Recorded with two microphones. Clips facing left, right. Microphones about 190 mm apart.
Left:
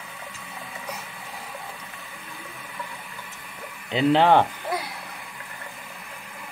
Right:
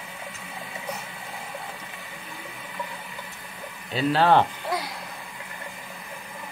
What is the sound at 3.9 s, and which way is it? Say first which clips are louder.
Speech: left 2 dB; 20° left (ahead or behind).